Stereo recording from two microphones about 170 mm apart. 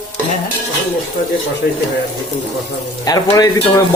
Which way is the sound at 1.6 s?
65° left (ahead or behind).